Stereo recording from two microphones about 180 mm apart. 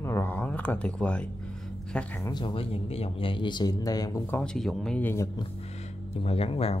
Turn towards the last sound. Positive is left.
turn(degrees=35)  # may be behind; listen again after turning